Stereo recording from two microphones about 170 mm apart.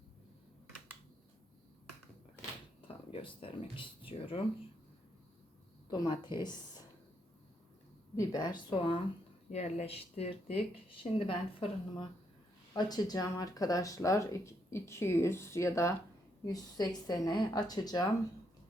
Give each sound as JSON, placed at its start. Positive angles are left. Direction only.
{"t": 2.8, "sound": "speech", "side_deg": 30}
{"t": 5.9, "sound": "speech", "side_deg": 25}
{"t": 8.1, "sound": "speech", "side_deg": 20}
{"t": 9.5, "sound": "speech", "side_deg": 40}